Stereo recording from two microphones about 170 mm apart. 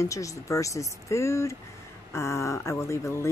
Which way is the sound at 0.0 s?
20° left (ahead or behind).